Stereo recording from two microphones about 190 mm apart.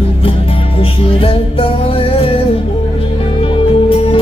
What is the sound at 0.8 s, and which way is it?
Music, 30° left (ahead or behind).